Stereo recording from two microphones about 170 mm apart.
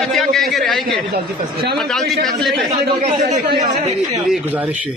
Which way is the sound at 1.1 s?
65° right (ahead or behind).